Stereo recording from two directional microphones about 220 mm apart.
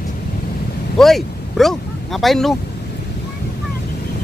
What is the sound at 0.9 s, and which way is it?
Vehicle, centre (ahead or behind).